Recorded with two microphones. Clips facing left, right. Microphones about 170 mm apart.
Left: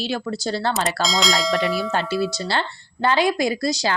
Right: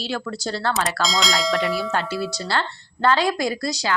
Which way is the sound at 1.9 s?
20° left (ahead or behind).